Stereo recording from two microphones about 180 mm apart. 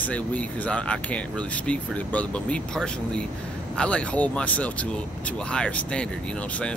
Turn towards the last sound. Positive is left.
turn(degrees=5)  # may be behind; listen again after turning